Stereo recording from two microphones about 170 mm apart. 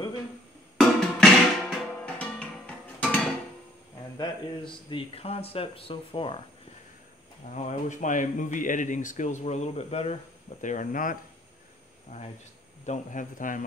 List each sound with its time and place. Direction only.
0.7 s music: centre (ahead or behind)
4.2 s speech: 30° left (ahead or behind)
7.5 s speech: 45° left (ahead or behind)
10.6 s speech: 50° left (ahead or behind)
12.8 s speech: 45° left (ahead or behind)